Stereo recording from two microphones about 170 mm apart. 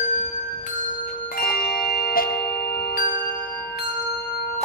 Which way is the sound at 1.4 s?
65° left (ahead or behind).